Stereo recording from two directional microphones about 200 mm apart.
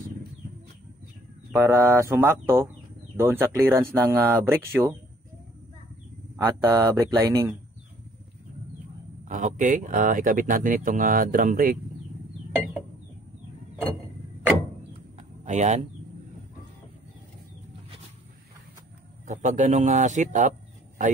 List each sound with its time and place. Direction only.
1.5 s speech: 15° right (ahead or behind)
6.3 s speech: 15° right (ahead or behind)
9.2 s speech: 35° right (ahead or behind)
15.1 s a sound: 35° right (ahead or behind)
19.2 s speech: 40° right (ahead or behind)